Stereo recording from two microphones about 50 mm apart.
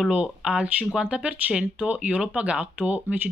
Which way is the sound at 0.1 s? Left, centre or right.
Centre.